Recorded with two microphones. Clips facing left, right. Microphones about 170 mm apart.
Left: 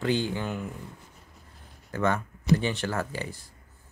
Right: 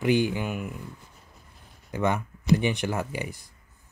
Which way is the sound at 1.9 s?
15° right (ahead or behind).